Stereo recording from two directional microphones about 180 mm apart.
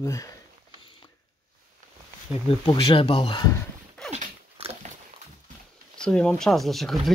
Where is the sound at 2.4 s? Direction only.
30° left (ahead or behind).